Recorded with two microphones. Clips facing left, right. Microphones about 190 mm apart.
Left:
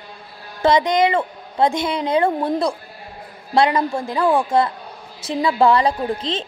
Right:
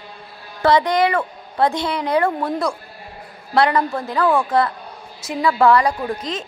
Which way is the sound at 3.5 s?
20° left (ahead or behind).